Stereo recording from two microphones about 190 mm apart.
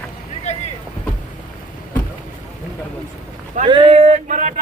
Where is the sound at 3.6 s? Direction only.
25° right (ahead or behind).